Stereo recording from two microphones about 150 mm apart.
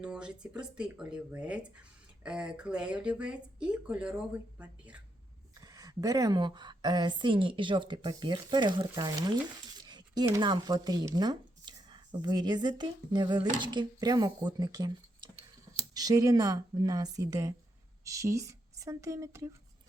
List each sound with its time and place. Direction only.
0.0 s speech: 5° right (ahead or behind)
5.5 s a woman's voice: 25° right (ahead or behind)